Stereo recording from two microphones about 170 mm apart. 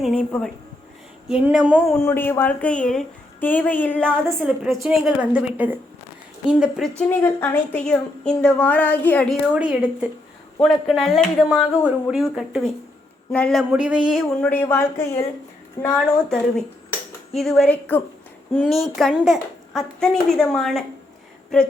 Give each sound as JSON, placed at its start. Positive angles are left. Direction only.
{"t": 0.0, "sound": "a woman's voice", "side_deg": 5}
{"t": 1.3, "sound": "speech", "side_deg": -5}
{"t": 2.0, "sound": "speech", "side_deg": 15}
{"t": 4.4, "sound": "a woman's voice", "side_deg": -5}
{"t": 7.1, "sound": "speech", "side_deg": 15}
{"t": 9.6, "sound": "a woman's voice", "side_deg": -5}
{"t": 13.7, "sound": "speech", "side_deg": -10}
{"t": 14.1, "sound": "a woman's voice", "side_deg": 5}
{"t": 18.5, "sound": "a woman's voice", "side_deg": 0}